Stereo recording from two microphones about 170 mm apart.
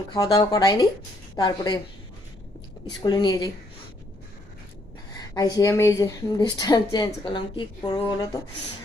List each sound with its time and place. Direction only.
0.1 s a woman's voice: 20° left (ahead or behind)
3.0 s a woman's voice: 25° left (ahead or behind)
5.3 s a woman's voice: 20° left (ahead or behind)